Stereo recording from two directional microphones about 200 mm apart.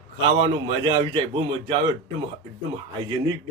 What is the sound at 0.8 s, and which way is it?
Speech, 25° right (ahead or behind).